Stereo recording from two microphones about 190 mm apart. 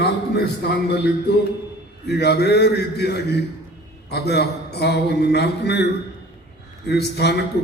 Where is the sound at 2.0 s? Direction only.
60° left (ahead or behind).